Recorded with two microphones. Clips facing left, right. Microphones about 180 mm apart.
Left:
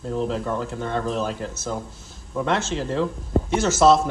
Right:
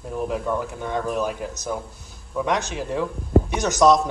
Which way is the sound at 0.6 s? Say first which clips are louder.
Left 1 dB; 15° right (ahead or behind).